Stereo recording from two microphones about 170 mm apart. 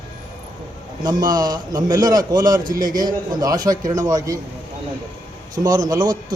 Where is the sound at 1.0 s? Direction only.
25° right (ahead or behind).